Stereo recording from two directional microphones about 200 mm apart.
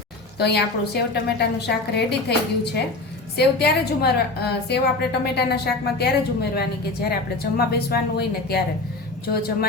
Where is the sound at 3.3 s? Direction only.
55° left (ahead or behind).